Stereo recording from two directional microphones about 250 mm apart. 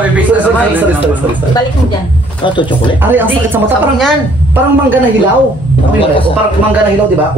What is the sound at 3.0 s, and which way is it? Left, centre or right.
A woman's voice, centre.